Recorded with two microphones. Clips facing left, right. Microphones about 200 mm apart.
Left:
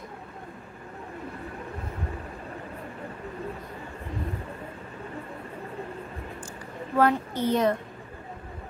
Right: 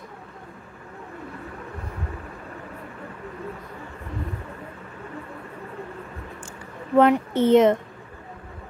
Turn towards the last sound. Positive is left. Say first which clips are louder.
# right 8 dB
turn(degrees=-20)  # may be behind; listen again after turning